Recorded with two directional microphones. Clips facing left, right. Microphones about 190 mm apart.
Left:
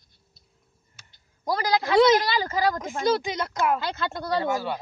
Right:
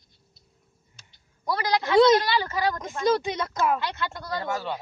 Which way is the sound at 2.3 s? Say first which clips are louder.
Left 1 dB; 40° left (ahead or behind).